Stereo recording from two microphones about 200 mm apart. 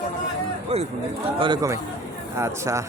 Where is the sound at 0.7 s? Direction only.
30° right (ahead or behind).